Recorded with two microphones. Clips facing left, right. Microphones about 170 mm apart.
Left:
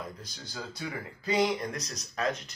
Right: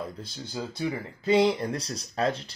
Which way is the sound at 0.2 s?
25° right (ahead or behind).